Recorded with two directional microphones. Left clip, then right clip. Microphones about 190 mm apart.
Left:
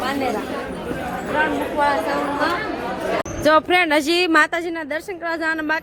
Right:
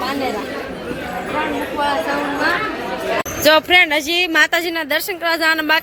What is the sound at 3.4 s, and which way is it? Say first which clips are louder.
Speech: right 4 dB; 15° left (ahead or behind).